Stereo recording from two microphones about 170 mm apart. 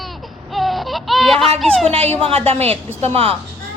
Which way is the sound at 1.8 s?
40° right (ahead or behind).